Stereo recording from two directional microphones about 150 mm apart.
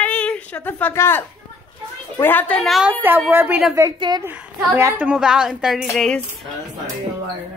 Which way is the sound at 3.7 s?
25° right (ahead or behind).